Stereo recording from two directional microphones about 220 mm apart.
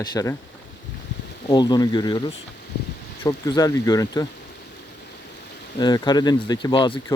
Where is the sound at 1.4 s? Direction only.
20° left (ahead or behind).